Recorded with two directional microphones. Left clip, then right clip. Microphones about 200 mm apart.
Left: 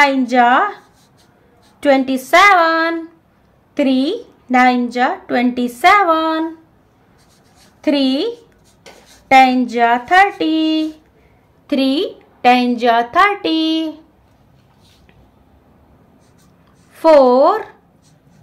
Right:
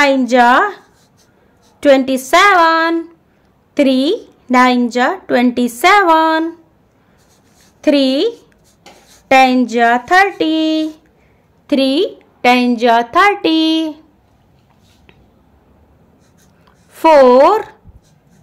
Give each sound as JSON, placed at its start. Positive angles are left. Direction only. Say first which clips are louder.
{"t": 0.0, "sound": "speech", "louder": "right 2 dB", "side_deg": -35}
{"t": 7.8, "sound": "speech", "louder": "right 4 dB", "side_deg": -35}
{"t": 16.9, "sound": "speech", "louder": "right 2 dB", "side_deg": -40}